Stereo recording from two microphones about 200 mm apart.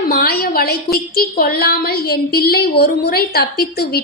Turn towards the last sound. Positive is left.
turn(degrees=50)  # may be behind; listen again after turning